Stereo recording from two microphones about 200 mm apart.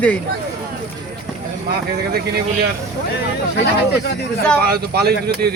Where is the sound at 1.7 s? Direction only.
50° right (ahead or behind).